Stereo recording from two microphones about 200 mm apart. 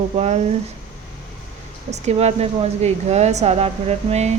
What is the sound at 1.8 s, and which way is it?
Speech, 35° right (ahead or behind).